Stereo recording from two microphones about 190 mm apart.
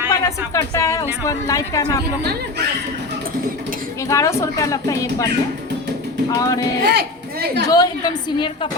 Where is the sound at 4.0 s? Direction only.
15° left (ahead or behind).